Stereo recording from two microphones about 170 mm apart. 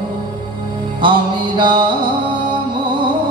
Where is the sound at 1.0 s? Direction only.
30° right (ahead or behind).